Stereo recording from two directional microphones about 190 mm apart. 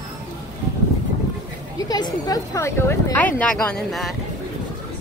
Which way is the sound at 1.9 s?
20° left (ahead or behind).